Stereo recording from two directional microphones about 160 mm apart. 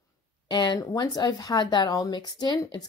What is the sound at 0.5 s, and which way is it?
Speech, 30° left (ahead or behind).